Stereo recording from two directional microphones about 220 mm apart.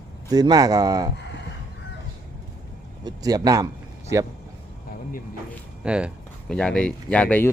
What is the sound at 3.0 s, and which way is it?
Speech, 15° right (ahead or behind).